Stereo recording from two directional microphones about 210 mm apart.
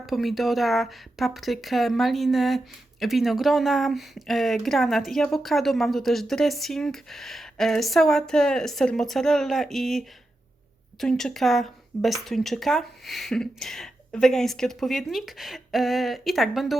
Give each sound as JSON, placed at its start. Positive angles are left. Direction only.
{"t": 0.0, "sound": "speech", "side_deg": 0}
{"t": 11.0, "sound": "speech", "side_deg": 0}